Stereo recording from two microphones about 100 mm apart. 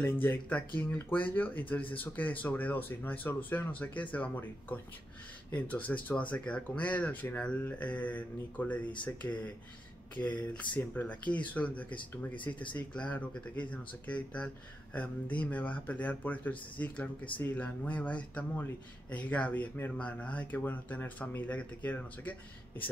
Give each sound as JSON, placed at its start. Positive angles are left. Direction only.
{"t": 0.0, "sound": "speech", "side_deg": 20}